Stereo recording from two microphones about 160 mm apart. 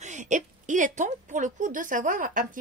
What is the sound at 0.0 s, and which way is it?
A woman's voice, 50° right (ahead or behind).